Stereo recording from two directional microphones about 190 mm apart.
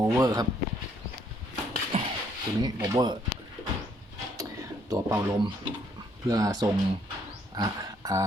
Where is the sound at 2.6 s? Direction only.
20° right (ahead or behind).